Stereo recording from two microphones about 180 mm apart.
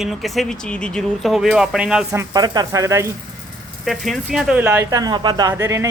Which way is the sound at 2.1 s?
20° right (ahead or behind).